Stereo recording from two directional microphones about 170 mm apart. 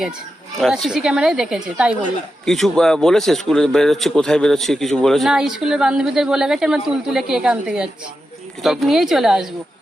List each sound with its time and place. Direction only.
0.6 s speech: centre (ahead or behind)